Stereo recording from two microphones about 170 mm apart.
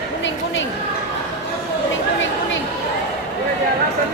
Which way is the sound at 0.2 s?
90° left.